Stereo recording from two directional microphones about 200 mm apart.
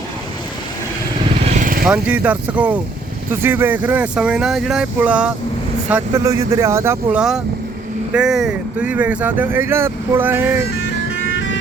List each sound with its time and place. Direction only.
1.5 s vehicle: 40° right (ahead or behind)
1.8 s speech: 5° right (ahead or behind)
5.9 s speech: 15° right (ahead or behind)